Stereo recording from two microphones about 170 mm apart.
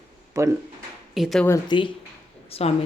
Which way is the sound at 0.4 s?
20° right (ahead or behind).